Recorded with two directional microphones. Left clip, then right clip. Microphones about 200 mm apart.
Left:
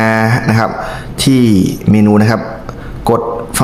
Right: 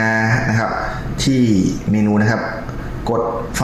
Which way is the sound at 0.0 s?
40° left (ahead or behind).